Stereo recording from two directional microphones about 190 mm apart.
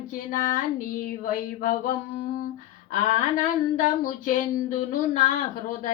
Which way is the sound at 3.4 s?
45° left (ahead or behind).